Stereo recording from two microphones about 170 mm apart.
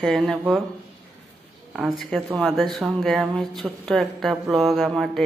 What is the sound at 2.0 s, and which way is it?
Speech, centre (ahead or behind).